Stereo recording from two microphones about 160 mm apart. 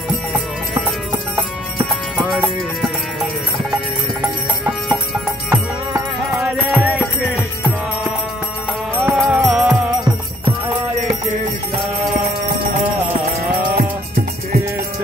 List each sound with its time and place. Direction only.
2.1 s music: 10° right (ahead or behind)
6.3 s music: 5° right (ahead or behind)
8.9 s music: 10° right (ahead or behind)
9.2 s music: centre (ahead or behind)
13.5 s music: 65° right (ahead or behind)